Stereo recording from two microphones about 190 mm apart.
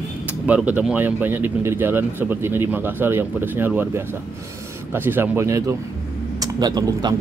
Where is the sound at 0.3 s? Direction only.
5° right (ahead or behind).